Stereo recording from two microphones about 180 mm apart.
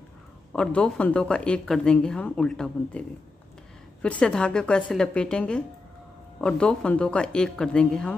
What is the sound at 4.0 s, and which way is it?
A woman's voice, 5° left (ahead or behind).